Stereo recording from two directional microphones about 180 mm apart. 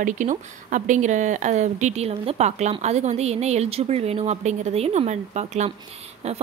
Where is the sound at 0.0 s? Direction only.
45° right (ahead or behind).